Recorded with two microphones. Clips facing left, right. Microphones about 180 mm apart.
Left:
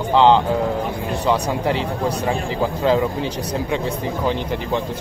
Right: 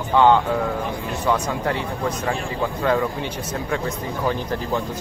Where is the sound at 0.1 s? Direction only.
25° left (ahead or behind).